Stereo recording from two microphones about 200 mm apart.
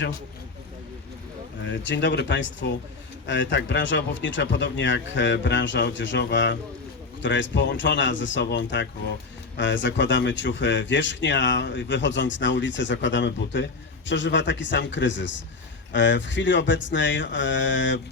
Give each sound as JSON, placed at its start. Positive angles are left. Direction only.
{"t": 1.6, "sound": "speech", "side_deg": 65}